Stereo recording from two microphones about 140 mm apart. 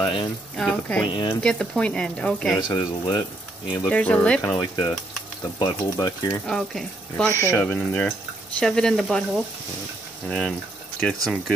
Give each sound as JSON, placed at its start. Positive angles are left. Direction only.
{"t": 0.0, "sound": "speech", "side_deg": 35}
{"t": 0.6, "sound": "speech", "side_deg": 5}
{"t": 1.0, "sound": "speech", "side_deg": 35}
{"t": 1.4, "sound": "speech", "side_deg": 5}
{"t": 2.7, "sound": "speech", "side_deg": 30}
{"t": 3.9, "sound": "speech", "side_deg": 10}
{"t": 4.4, "sound": "speech", "side_deg": 25}
{"t": 6.4, "sound": "speech", "side_deg": 5}
{"t": 7.3, "sound": "speech", "side_deg": 20}